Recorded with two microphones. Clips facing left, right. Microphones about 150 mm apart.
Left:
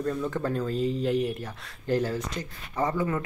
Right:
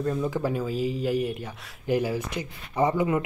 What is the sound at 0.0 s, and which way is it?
Speech, 5° right (ahead or behind).